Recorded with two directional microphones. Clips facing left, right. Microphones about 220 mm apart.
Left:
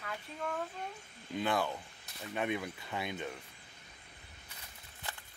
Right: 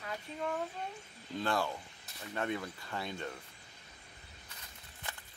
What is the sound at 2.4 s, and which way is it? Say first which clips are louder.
Speech: left 1 dB; 15° left (ahead or behind).